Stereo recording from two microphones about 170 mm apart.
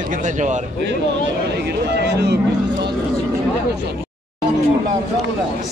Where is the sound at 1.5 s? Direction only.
75° right (ahead or behind).